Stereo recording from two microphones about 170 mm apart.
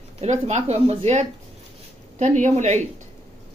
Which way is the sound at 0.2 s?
40° right (ahead or behind).